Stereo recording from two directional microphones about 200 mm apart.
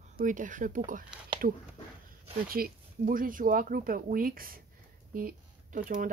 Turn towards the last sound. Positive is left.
turn(degrees=-40)  # may be behind; listen again after turning